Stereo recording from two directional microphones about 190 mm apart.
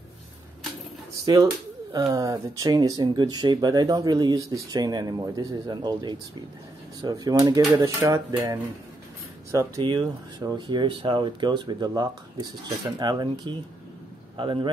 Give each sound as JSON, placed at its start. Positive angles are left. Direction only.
{"t": 1.2, "sound": "speech", "side_deg": -20}